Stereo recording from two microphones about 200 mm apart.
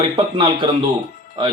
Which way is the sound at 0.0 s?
25° right (ahead or behind).